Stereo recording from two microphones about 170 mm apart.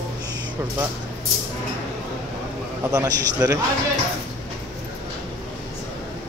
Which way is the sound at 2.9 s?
20° right (ahead or behind).